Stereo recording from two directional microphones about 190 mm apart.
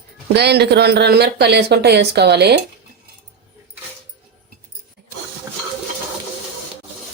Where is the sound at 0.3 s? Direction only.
60° right (ahead or behind).